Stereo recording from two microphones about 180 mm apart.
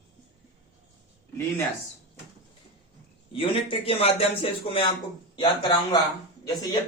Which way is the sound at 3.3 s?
30° left (ahead or behind).